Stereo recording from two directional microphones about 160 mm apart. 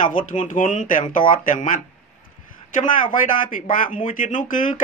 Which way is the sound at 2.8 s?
55° left (ahead or behind).